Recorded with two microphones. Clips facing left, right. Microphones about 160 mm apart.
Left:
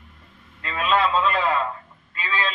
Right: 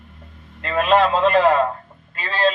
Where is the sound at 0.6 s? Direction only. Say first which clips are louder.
Right 6 dB; 60° right (ahead or behind).